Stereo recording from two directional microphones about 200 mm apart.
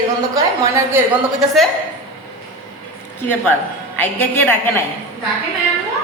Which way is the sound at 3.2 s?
10° left (ahead or behind).